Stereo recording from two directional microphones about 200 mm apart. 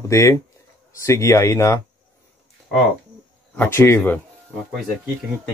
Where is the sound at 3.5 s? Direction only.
10° left (ahead or behind).